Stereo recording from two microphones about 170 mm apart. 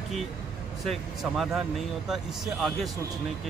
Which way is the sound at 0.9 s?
Centre (ahead or behind).